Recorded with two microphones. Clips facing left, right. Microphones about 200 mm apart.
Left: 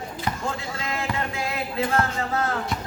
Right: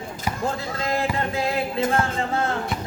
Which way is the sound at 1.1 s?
35° right (ahead or behind).